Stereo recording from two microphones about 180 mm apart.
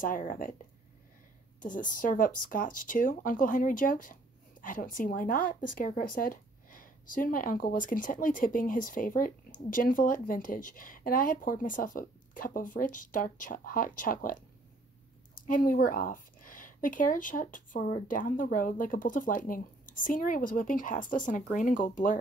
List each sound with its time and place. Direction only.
0.0 s speech: 50° left (ahead or behind)
1.6 s speech: 45° left (ahead or behind)
15.4 s speech: 50° left (ahead or behind)